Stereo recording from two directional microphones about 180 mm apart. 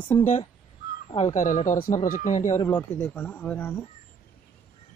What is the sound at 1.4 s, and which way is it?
Speech, 45° left (ahead or behind).